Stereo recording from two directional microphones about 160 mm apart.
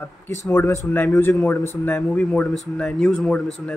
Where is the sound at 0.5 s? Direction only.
15° left (ahead or behind).